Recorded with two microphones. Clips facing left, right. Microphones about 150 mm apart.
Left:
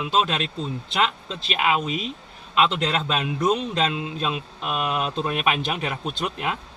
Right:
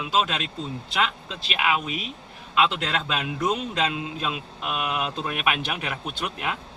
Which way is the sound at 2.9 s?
25° left (ahead or behind).